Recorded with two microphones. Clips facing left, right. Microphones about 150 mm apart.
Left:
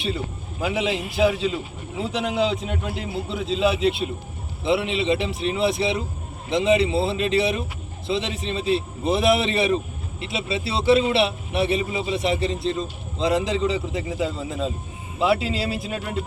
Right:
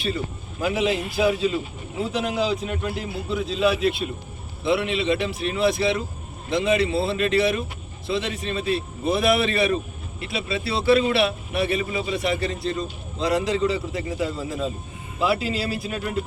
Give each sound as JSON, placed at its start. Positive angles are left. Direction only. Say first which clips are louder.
{"t": 0.6, "sound": "a man's voice", "louder": "right 1 dB", "side_deg": 15}